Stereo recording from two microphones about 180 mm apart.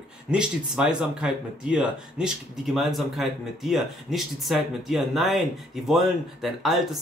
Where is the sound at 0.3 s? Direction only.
5° right (ahead or behind).